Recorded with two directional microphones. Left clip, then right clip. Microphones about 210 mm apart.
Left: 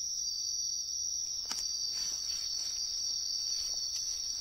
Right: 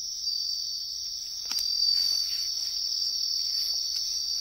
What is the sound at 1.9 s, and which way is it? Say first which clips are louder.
Cricket: right 10 dB; centre (ahead or behind).